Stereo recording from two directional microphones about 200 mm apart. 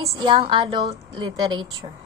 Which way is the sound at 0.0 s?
25° right (ahead or behind).